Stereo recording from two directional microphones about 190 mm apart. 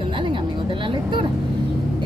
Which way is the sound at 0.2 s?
25° right (ahead or behind).